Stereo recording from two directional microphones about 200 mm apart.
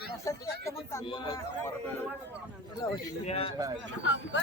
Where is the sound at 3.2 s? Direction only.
30° left (ahead or behind).